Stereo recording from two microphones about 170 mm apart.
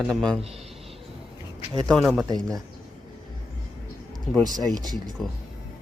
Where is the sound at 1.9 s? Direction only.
Centre (ahead or behind).